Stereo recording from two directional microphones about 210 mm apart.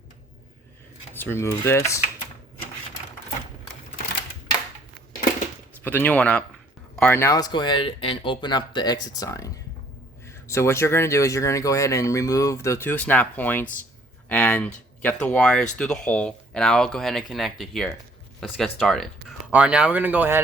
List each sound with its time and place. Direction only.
1.1 s speech: 10° left (ahead or behind)
5.8 s speech: 10° left (ahead or behind); by 20.4 s 10° right (ahead or behind)